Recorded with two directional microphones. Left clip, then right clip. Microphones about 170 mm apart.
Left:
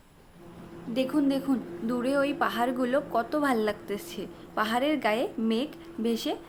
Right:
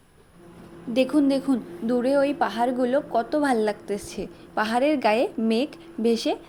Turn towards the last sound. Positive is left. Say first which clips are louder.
# right 7 dB
turn(degrees=-25)  # may be behind; listen again after turning